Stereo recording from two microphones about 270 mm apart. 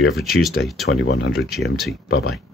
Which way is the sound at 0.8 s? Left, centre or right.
Left.